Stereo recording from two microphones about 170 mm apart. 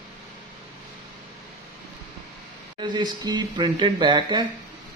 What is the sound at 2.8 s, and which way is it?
Speech, 25° right (ahead or behind).